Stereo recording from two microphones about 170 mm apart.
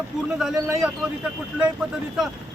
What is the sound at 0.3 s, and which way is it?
Speech, 5° right (ahead or behind).